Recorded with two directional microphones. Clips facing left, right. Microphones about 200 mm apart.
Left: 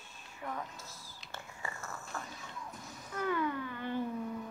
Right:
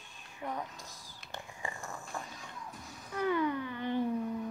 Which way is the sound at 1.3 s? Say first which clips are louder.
Right 2 dB; 15° right (ahead or behind).